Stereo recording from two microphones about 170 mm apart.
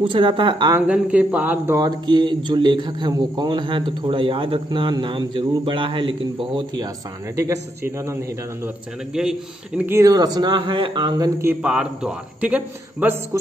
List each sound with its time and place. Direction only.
0.0 s speech: 30° right (ahead or behind)
0.7 s a man's voice: 5° right (ahead or behind)
1.8 s a man's voice: 25° right (ahead or behind)
9.1 s speech: 5° right (ahead or behind); by 11.2 s 25° right (ahead or behind)
11.4 s a man's voice: 5° right (ahead or behind)